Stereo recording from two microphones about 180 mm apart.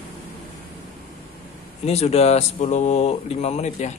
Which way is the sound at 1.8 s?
35° left (ahead or behind).